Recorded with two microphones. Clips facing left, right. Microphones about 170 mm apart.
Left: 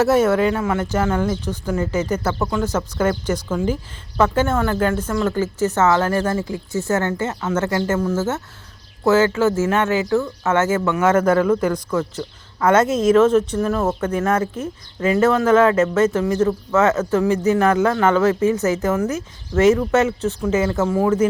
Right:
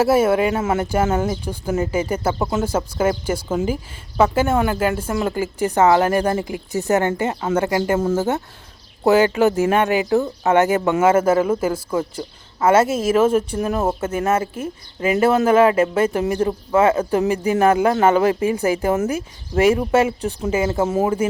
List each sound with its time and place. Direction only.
0.0 s speech: 10° right (ahead or behind)